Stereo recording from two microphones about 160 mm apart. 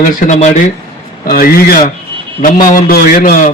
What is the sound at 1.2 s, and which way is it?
A man's voice, 70° left (ahead or behind).